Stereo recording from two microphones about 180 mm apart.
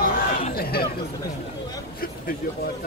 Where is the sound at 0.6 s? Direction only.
60° left (ahead or behind).